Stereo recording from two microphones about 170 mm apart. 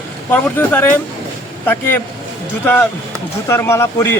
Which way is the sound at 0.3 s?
10° left (ahead or behind).